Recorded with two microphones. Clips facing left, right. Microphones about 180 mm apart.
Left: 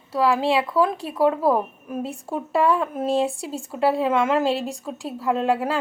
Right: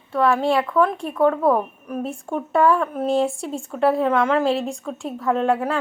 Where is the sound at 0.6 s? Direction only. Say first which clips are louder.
Right 2 dB; 10° left (ahead or behind).